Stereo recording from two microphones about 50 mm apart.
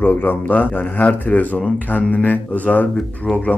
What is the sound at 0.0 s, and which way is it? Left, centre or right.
A man's voice, left.